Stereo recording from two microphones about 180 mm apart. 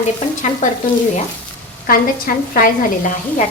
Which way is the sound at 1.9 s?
50° left (ahead or behind).